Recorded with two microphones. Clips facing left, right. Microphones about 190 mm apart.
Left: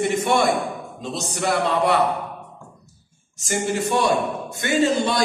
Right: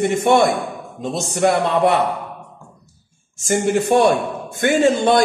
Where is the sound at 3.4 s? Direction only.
55° right (ahead or behind).